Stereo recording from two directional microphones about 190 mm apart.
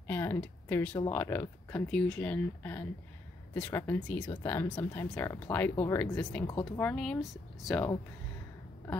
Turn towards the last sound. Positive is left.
turn(degrees=0)  # may be behind; listen again after turning